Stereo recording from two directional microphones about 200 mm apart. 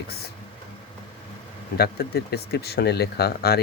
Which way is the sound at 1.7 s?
50° left (ahead or behind).